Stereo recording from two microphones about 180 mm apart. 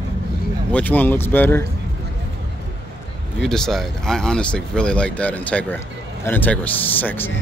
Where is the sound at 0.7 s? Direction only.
10° left (ahead or behind).